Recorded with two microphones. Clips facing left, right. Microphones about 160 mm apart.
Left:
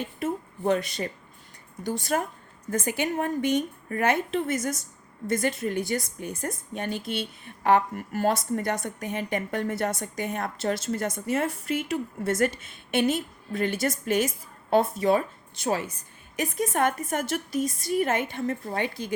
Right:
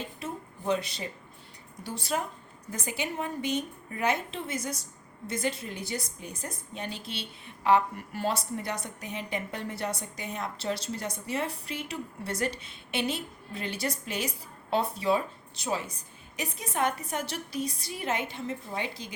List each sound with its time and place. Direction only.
0.2 s a sound: 50° left (ahead or behind)
2.0 s a woman's voice: 50° left (ahead or behind)
15.6 s a woman's voice: 65° left (ahead or behind)
16.4 s a woman's voice: 50° left (ahead or behind)